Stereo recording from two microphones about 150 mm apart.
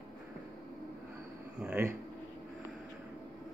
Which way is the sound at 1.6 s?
10° right (ahead or behind).